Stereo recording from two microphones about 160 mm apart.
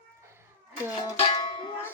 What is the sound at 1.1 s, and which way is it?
Music, 25° left (ahead or behind).